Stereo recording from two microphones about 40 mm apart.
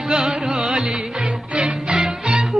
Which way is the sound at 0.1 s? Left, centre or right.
Centre.